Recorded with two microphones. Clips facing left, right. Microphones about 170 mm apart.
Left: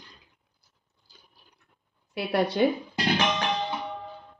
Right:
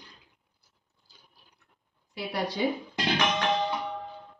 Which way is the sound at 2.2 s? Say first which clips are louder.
Left 6 dB; 60° left (ahead or behind).